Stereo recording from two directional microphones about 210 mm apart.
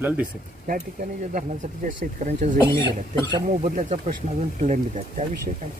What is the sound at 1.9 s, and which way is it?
Speech, 35° right (ahead or behind).